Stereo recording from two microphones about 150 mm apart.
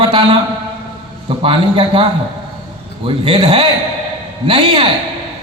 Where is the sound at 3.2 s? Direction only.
35° right (ahead or behind).